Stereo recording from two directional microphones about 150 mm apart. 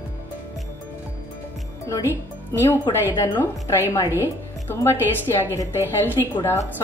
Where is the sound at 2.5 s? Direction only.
15° left (ahead or behind).